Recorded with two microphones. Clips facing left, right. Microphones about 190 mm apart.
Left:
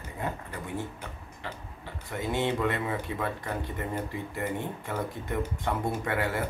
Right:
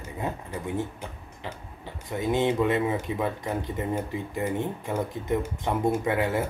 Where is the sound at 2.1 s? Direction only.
20° right (ahead or behind).